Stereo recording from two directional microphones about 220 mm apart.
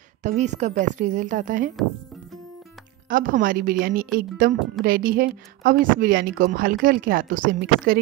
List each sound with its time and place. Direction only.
0.2 s a woman's voice: 30° right (ahead or behind)
3.1 s a woman's voice: 40° right (ahead or behind)